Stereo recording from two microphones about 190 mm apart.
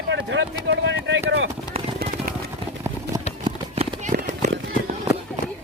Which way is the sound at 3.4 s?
25° right (ahead or behind).